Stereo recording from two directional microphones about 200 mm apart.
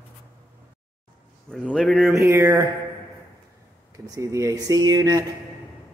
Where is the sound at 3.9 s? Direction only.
15° right (ahead or behind).